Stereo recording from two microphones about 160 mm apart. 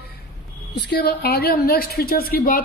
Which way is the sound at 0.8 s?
90° left.